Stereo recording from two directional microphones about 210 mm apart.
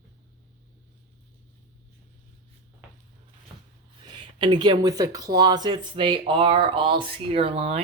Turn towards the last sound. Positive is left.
turn(degrees=-30)  # may be behind; listen again after turning